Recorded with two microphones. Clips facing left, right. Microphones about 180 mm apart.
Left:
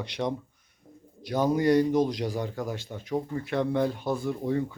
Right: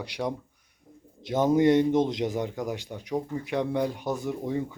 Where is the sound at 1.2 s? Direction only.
20° right (ahead or behind).